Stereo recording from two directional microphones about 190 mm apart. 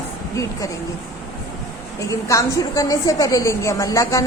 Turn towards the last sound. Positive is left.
turn(degrees=15)  # may be behind; listen again after turning